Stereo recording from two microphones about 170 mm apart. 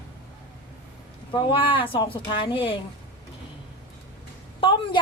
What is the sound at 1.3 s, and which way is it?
Speech, 25° left (ahead or behind).